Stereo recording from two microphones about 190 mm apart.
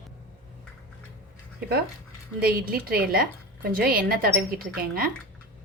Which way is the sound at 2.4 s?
50° right (ahead or behind).